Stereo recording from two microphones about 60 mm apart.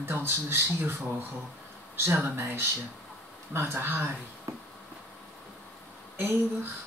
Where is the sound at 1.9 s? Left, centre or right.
Right.